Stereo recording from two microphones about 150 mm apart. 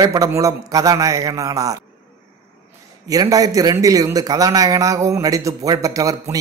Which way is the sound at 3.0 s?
25° right (ahead or behind).